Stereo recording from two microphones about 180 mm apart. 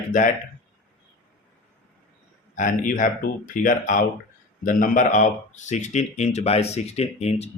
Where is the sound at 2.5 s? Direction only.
45° left (ahead or behind).